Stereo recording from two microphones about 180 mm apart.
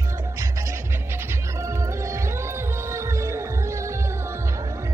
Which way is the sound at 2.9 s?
15° right (ahead or behind).